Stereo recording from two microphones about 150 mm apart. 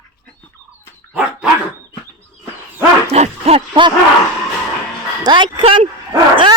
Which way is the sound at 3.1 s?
45° right (ahead or behind).